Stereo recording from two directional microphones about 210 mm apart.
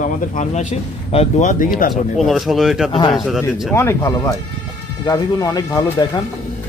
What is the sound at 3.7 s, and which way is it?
Speech, 10° left (ahead or behind).